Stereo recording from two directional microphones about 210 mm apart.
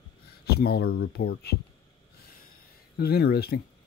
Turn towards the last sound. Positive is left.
turn(degrees=50)  # may be behind; listen again after turning